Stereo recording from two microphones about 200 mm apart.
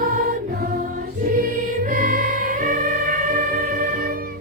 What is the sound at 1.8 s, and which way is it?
Music, 45° right (ahead or behind).